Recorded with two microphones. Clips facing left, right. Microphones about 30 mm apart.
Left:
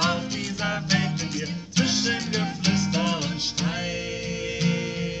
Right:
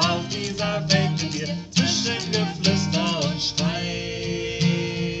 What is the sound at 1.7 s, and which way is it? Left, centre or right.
Music, right.